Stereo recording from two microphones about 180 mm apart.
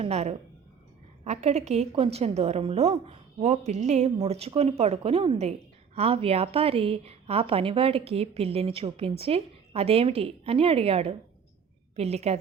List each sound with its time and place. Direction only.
0.0 s a woman's voice: 35° right (ahead or behind)